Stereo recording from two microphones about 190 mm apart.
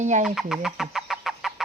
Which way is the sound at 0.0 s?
40° right (ahead or behind).